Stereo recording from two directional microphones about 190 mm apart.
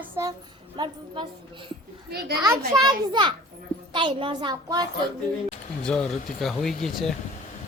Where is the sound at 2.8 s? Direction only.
25° right (ahead or behind).